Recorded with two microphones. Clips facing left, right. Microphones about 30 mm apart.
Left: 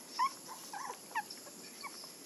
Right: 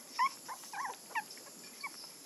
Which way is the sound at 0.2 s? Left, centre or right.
Centre.